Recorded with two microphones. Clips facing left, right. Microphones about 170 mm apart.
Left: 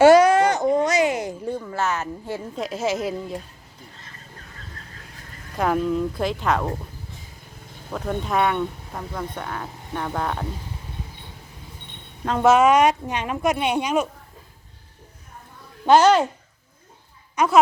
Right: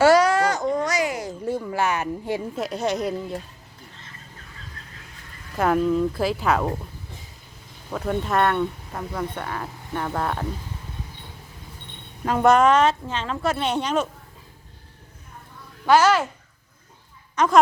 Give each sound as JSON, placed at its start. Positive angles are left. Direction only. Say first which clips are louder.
{"t": 0.0, "sound": "baby cry", "louder": "left 4 dB", "side_deg": 20}
{"t": 1.5, "sound": "a sound", "louder": "right 4 dB", "side_deg": -10}
{"t": 2.6, "sound": "speech", "louder": "left 3 dB", "side_deg": 0}
{"t": 5.5, "sound": "speech", "louder": "right 2 dB", "side_deg": 0}
{"t": 7.9, "sound": "speech", "louder": "right 1 dB", "side_deg": 0}
{"t": 12.2, "sound": "a woman's voice", "louder": "left 1 dB", "side_deg": 0}
{"t": 15.9, "sound": "a child's voice", "louder": "left 3 dB", "side_deg": 30}
{"t": 17.3, "sound": "speech", "louder": "even", "side_deg": 10}